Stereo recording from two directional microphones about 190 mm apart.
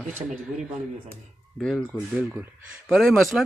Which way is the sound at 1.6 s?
5° left (ahead or behind).